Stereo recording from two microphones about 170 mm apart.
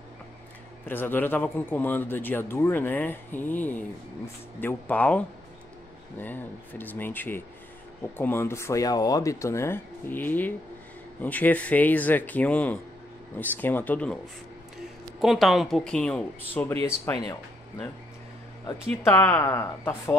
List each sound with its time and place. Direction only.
0.8 s a man's voice: 10° left (ahead or behind)
14.8 s speech: centre (ahead or behind)
16.8 s speech: 20° left (ahead or behind)
19.0 s a man's voice: 15° left (ahead or behind)